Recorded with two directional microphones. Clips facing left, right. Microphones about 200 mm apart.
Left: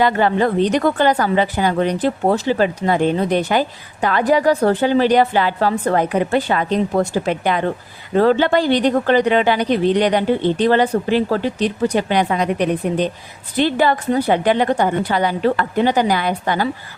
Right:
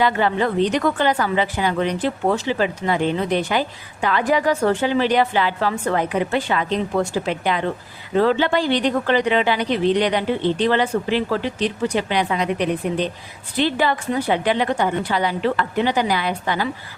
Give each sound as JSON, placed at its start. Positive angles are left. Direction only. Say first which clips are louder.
{"t": 0.0, "sound": "speech", "louder": "left 3 dB", "side_deg": 45}